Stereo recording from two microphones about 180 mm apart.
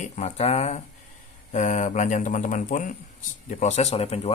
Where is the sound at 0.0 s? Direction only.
40° left (ahead or behind).